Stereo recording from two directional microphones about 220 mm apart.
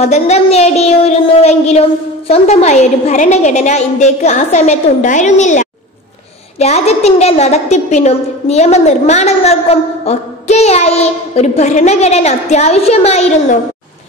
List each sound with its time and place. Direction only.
0.0 s a woman's voice: 30° left (ahead or behind)